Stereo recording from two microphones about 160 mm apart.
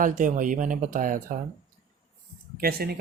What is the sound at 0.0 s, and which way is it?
Speech, 55° right (ahead or behind).